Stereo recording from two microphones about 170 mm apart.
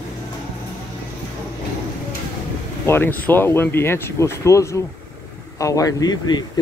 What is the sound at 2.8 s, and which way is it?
Speech, 15° left (ahead or behind).